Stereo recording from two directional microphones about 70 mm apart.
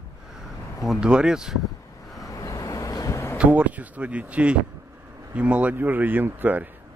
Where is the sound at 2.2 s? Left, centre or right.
Left.